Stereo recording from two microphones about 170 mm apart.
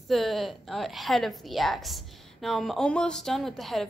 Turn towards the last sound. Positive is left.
turn(degrees=0)  # may be behind; listen again after turning